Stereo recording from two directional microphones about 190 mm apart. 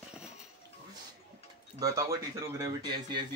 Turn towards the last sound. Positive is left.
turn(degrees=-20)  # may be behind; listen again after turning